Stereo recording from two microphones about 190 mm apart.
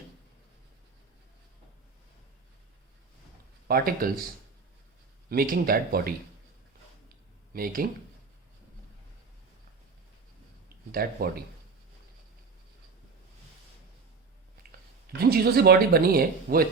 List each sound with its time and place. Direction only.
3.7 s speech: 50° right (ahead or behind)
5.3 s speech: 50° right (ahead or behind)
7.5 s speech: 50° right (ahead or behind)
10.9 s speech: 55° right (ahead or behind)
15.2 s speech: 55° right (ahead or behind)